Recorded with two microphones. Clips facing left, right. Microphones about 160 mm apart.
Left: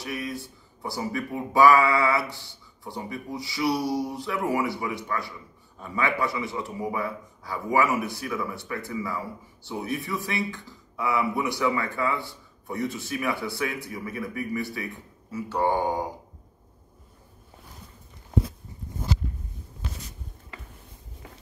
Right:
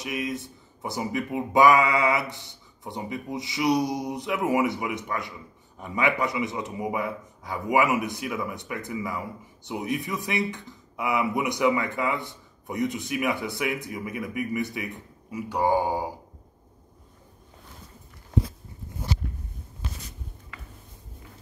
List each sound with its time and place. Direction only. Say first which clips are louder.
0.0 s speech: right 2 dB; 20° right (ahead or behind)